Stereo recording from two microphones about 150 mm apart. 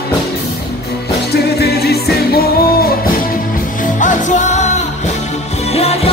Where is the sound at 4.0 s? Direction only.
55° left (ahead or behind).